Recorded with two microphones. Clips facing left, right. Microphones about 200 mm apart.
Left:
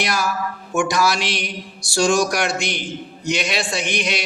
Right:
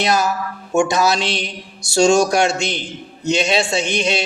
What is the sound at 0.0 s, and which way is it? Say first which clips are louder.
A man's voice: right 4 dB; 25° right (ahead or behind).